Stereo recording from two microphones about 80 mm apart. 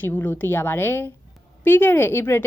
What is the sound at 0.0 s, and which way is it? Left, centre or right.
A woman's voice, left.